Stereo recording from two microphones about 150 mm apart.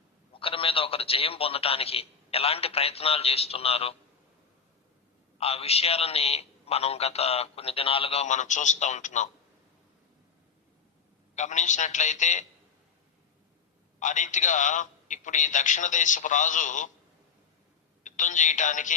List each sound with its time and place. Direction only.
0.3 s a man's voice: 35° left (ahead or behind)
5.4 s a man's voice: 45° left (ahead or behind)
11.3 s a man's voice: 50° left (ahead or behind)
14.0 s a man's voice: 55° left (ahead or behind)
18.0 s speech: 55° left (ahead or behind)